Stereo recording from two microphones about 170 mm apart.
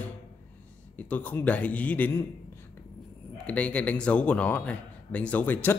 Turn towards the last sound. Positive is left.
turn(degrees=10)  # may be behind; listen again after turning